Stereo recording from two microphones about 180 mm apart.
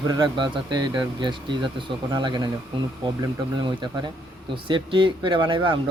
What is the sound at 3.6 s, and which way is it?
Speech, 25° right (ahead or behind).